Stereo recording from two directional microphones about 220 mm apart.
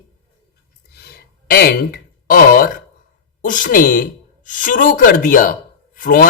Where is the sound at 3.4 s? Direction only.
35° left (ahead or behind).